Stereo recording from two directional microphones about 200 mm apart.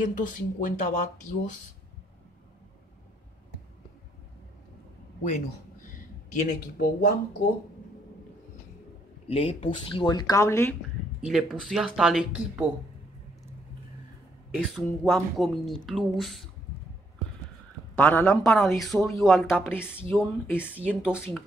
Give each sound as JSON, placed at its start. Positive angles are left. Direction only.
{"t": 0.1, "sound": "speech", "side_deg": 40}
{"t": 5.2, "sound": "speech", "side_deg": 40}
{"t": 9.3, "sound": "speech", "side_deg": 30}
{"t": 11.1, "sound": "speech", "side_deg": 0}
{"t": 14.5, "sound": "speech", "side_deg": -5}
{"t": 17.9, "sound": "a woman's voice", "side_deg": 10}
{"t": 20.1, "sound": "speech", "side_deg": -5}